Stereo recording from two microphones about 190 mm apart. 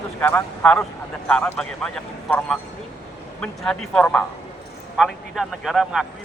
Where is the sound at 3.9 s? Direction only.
5° left (ahead or behind).